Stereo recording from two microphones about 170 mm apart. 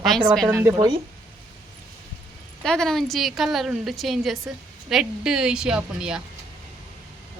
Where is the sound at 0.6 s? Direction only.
20° right (ahead or behind).